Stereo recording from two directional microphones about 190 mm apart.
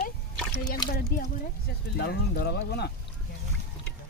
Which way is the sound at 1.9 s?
55° left (ahead or behind).